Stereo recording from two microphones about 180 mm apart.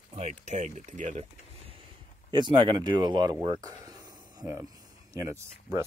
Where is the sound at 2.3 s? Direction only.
25° right (ahead or behind).